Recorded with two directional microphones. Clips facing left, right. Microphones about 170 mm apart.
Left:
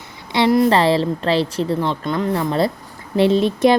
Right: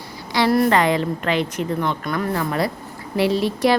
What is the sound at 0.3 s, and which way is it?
A woman's voice, 20° left (ahead or behind).